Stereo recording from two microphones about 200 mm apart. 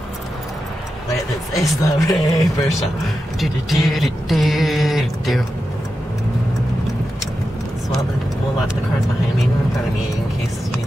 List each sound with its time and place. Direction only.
1.5 s speech: 15° left (ahead or behind)
3.3 s speech: centre (ahead or behind)